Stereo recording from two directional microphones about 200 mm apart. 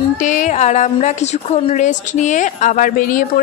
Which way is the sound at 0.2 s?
40° left (ahead or behind).